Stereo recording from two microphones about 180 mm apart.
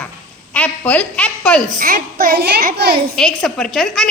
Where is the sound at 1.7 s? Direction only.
50° right (ahead or behind).